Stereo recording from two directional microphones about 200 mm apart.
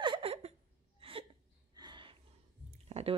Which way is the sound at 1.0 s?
30° right (ahead or behind).